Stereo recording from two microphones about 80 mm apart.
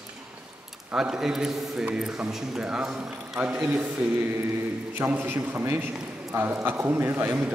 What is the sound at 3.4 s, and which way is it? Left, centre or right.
A man's voice, centre.